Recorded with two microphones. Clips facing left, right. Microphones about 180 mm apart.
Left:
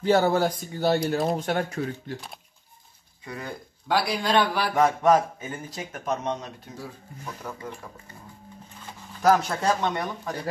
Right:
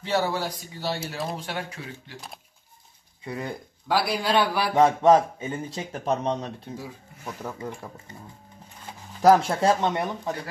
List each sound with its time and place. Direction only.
0.0 s speech: 45° left (ahead or behind)
3.3 s speech: 25° right (ahead or behind)
3.8 s a man's voice: 5° right (ahead or behind)
4.7 s speech: 25° right (ahead or behind)
9.2 s speech: 25° right (ahead or behind)